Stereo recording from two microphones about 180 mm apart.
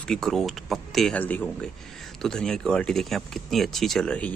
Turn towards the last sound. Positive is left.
turn(degrees=5)  # may be behind; listen again after turning